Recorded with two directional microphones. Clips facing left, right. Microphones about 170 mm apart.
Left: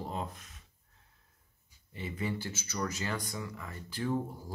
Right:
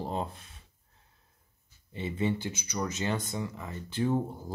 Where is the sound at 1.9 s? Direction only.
25° right (ahead or behind).